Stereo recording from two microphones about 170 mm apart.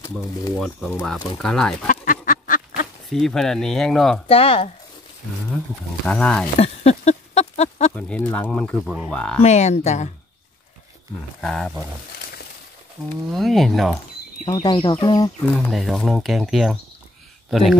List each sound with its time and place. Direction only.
0.6 s speech: centre (ahead or behind)
1.9 s duck: 55° left (ahead or behind)
3.1 s speech: 5° left (ahead or behind)
4.3 s speech: 35° left (ahead or behind)
6.0 s speech: 5° left (ahead or behind)
6.6 s a sound: 40° left (ahead or behind)
7.9 s speech: 5° left (ahead or behind)
9.4 s speech: 40° left (ahead or behind)
11.4 s speech: centre (ahead or behind)
13.1 s speech: centre (ahead or behind)
14.4 s speech: 30° left (ahead or behind)
15.4 s speech: 10° left (ahead or behind)